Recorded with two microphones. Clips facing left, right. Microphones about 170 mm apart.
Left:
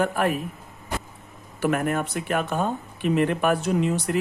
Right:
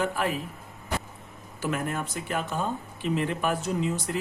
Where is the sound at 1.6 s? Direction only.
60° left (ahead or behind).